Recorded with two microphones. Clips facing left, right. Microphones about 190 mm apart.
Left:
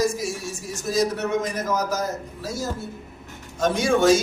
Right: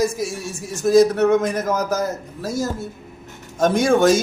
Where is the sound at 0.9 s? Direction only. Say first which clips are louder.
Right 9 dB; 55° right (ahead or behind).